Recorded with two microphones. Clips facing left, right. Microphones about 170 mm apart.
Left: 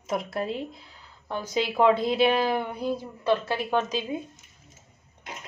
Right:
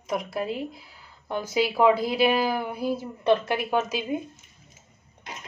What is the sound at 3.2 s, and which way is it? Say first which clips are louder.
Speech: right 3 dB; 20° right (ahead or behind).